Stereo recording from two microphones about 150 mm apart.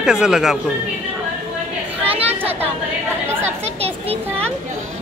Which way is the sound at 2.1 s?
40° right (ahead or behind).